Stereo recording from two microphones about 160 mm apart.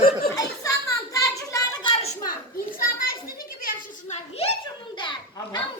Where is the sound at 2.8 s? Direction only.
65° left (ahead or behind).